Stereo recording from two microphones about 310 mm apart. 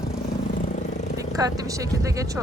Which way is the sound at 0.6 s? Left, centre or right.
Left.